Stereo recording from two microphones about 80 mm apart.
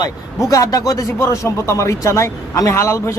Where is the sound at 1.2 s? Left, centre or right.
Left.